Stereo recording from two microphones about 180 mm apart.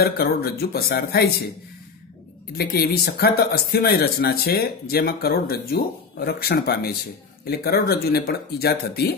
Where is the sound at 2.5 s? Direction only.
60° left (ahead or behind).